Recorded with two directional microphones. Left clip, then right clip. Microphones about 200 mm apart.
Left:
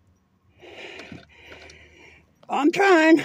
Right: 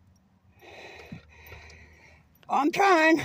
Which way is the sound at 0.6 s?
Centre (ahead or behind).